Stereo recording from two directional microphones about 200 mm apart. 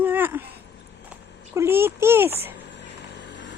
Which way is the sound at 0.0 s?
10° right (ahead or behind).